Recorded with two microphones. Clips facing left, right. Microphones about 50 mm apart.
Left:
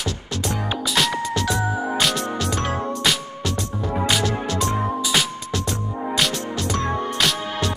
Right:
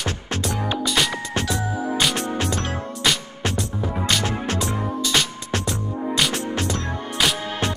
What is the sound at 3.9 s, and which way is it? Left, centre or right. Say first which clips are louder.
Music: left 3 dB; centre.